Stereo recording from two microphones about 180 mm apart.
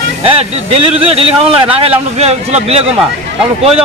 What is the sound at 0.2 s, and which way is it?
Speech, 35° right (ahead or behind).